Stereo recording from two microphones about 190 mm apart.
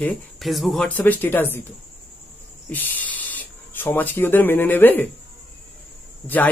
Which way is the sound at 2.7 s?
10° left (ahead or behind).